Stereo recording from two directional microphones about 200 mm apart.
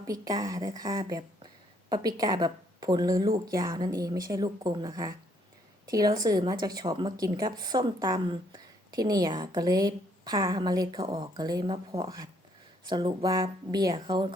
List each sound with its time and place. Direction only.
0.0 s a woman's voice: 20° right (ahead or behind)